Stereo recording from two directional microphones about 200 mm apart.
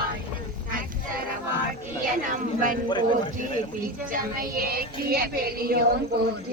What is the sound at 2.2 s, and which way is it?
Speech, 40° right (ahead or behind).